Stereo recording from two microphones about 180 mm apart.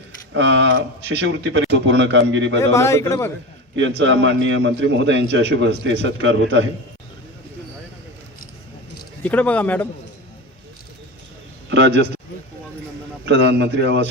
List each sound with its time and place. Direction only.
0.3 s a man's voice: 90° right
2.7 s a man's voice: 15° left (ahead or behind)
3.8 s a man's voice: 90° right
9.2 s a man's voice: 10° left (ahead or behind)
11.7 s a man's voice: 90° right
13.2 s a man's voice: 70° right (ahead or behind)